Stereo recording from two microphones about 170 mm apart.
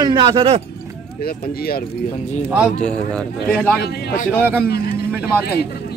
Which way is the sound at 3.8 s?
65° left (ahead or behind).